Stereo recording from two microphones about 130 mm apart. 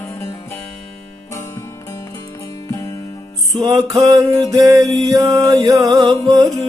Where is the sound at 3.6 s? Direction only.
30° right (ahead or behind).